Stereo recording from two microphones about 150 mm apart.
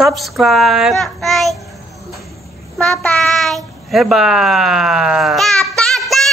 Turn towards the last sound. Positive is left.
turn(degrees=0)  # may be behind; listen again after turning